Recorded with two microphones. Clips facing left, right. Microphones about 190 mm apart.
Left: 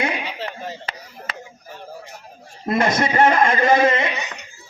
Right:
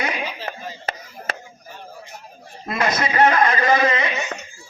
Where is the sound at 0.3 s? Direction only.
70° left (ahead or behind).